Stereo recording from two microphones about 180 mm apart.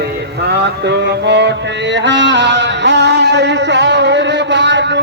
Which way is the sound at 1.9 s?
80° right.